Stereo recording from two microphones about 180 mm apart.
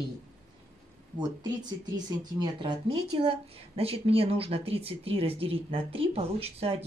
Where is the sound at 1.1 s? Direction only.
25° right (ahead or behind).